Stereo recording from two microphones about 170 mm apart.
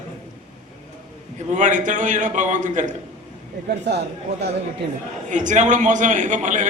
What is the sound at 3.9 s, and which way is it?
Speech, 85° right.